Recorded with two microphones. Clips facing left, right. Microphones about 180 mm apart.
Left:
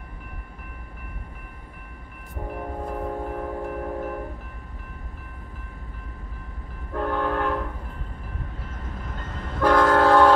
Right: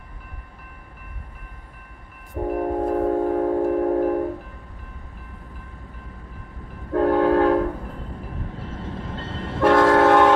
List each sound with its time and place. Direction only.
2.5 s train: 40° right (ahead or behind)
6.9 s train: 35° right (ahead or behind)
8.6 s train: 30° right (ahead or behind)